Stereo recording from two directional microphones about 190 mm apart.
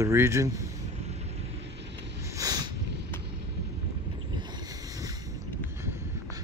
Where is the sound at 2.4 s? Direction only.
20° right (ahead or behind).